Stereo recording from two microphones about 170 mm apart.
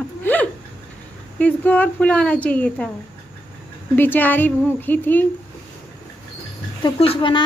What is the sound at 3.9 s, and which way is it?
Speech, 10° left (ahead or behind).